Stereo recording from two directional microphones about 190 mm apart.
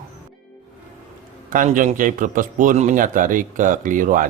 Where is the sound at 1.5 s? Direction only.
45° right (ahead or behind).